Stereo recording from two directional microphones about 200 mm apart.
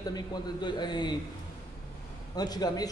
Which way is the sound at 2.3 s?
20° left (ahead or behind).